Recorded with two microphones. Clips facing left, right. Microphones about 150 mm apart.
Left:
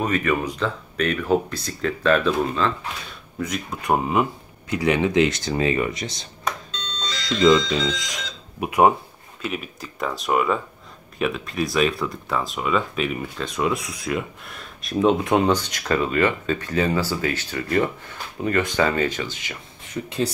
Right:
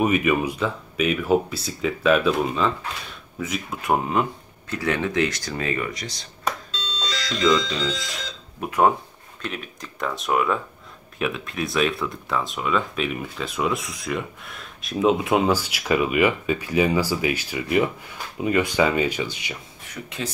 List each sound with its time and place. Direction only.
0.0 s speech: 10° right (ahead or behind); by 6.2 s 25° left (ahead or behind)
7.5 s speech: 15° left (ahead or behind); by 19.5 s 15° right (ahead or behind)
19.9 s speech: 30° left (ahead or behind)